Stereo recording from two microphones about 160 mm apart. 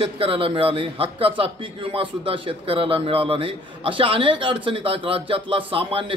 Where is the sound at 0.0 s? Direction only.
35° right (ahead or behind).